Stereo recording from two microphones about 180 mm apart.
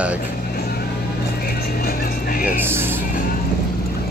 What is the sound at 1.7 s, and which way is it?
Music, 55° left (ahead or behind).